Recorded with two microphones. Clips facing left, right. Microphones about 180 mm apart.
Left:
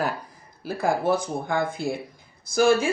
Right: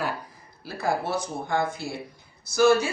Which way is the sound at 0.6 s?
50° left (ahead or behind).